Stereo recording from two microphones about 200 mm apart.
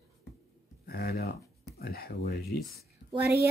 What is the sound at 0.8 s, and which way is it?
Speech, 50° left (ahead or behind).